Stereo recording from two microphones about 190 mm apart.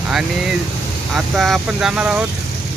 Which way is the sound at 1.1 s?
Centre (ahead or behind).